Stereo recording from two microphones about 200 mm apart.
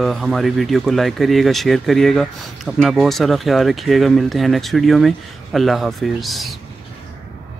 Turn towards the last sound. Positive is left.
turn(degrees=0)  # may be behind; listen again after turning